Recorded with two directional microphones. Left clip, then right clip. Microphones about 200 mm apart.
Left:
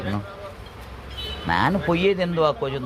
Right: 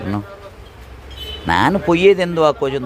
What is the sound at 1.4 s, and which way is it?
Speech, 60° right (ahead or behind).